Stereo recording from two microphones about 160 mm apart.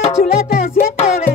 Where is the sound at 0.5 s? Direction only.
65° left (ahead or behind).